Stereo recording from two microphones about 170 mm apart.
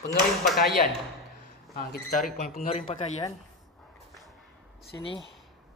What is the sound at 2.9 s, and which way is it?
Speech, 35° left (ahead or behind).